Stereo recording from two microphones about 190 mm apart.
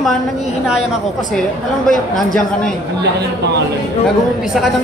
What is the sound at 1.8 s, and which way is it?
Speech, centre (ahead or behind).